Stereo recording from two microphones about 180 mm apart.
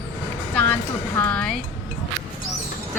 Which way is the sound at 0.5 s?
10° left (ahead or behind).